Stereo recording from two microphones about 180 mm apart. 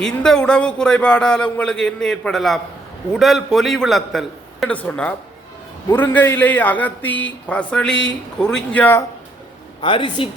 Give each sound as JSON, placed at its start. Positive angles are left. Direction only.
{"t": 0.0, "sound": "a man's voice", "side_deg": 5}
{"t": 9.8, "sound": "speech", "side_deg": 25}